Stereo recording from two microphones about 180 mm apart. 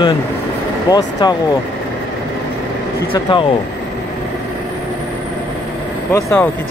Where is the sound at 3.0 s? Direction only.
30° left (ahead or behind).